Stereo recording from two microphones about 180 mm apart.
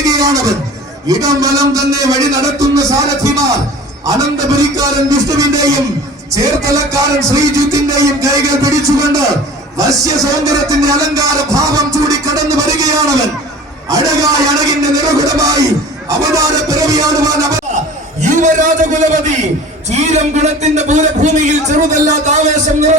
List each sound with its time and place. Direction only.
0.0 s music: 20° right (ahead or behind)
1.0 s a man's voice: 20° right (ahead or behind)
18.2 s a man's voice: 45° right (ahead or behind)